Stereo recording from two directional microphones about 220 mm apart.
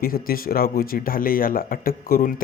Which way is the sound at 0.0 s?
40° left (ahead or behind).